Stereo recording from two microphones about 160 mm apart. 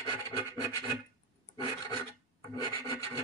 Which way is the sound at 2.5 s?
25° left (ahead or behind).